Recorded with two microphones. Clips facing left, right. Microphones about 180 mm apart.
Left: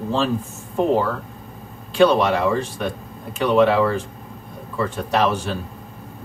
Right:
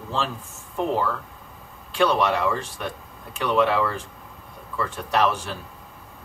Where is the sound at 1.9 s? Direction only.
20° left (ahead or behind).